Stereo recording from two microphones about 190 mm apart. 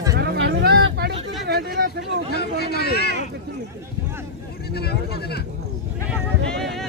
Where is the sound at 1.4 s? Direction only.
60° right (ahead or behind).